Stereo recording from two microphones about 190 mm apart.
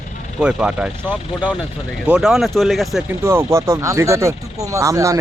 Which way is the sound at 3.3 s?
15° right (ahead or behind).